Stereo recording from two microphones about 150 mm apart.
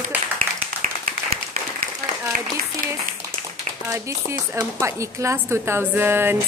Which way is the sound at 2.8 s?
65° right (ahead or behind).